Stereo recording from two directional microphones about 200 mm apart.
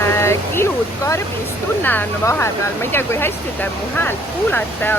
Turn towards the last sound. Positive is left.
turn(degrees=10)  # may be behind; listen again after turning